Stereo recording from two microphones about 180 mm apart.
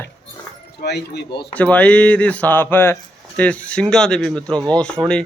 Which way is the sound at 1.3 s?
30° left (ahead or behind).